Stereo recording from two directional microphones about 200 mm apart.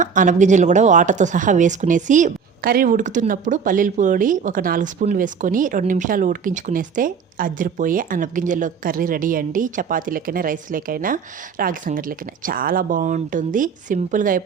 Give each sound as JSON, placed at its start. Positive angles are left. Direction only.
{"t": 0.0, "sound": "speech", "side_deg": -40}